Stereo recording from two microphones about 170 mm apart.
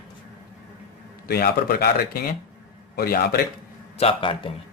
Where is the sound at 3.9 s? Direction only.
35° left (ahead or behind).